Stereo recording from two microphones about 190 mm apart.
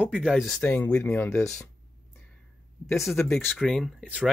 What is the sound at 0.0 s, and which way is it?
Speech, 5° right (ahead or behind).